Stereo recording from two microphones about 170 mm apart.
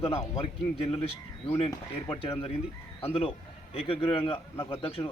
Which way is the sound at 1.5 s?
35° left (ahead or behind).